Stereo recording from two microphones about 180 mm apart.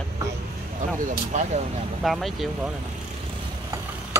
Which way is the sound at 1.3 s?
40° right (ahead or behind).